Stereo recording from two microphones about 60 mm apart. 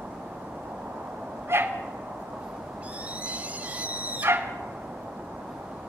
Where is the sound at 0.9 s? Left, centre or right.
Right.